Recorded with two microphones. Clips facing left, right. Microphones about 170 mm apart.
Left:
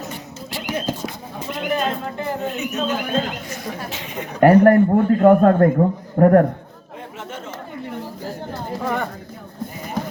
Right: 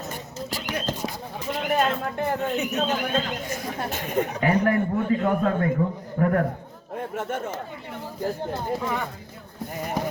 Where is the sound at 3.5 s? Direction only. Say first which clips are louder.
Even; 50° right (ahead or behind).